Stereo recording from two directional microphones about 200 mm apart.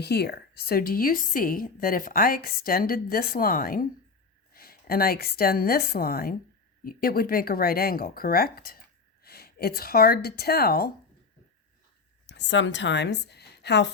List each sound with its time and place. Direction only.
0.0 s a woman's voice: 55° left (ahead or behind)
12.2 s a woman's voice: 60° left (ahead or behind)